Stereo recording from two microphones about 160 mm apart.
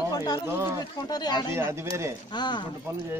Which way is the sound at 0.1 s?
25° left (ahead or behind).